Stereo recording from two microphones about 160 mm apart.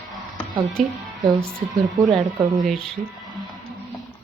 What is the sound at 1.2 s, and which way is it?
Speech, 25° right (ahead or behind).